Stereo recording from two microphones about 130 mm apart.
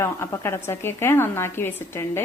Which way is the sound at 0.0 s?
20° left (ahead or behind).